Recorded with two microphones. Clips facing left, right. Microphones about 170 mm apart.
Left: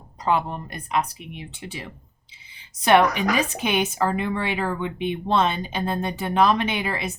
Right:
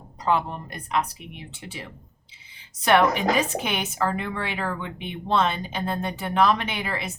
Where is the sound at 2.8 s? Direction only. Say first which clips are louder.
Left 2 dB; 20° left (ahead or behind).